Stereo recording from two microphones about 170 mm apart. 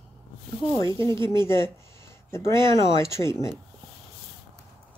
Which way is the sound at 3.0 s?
15° left (ahead or behind).